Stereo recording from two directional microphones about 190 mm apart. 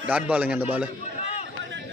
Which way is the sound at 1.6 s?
80° right.